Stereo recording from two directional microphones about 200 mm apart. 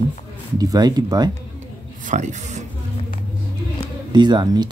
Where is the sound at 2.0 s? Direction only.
35° right (ahead or behind).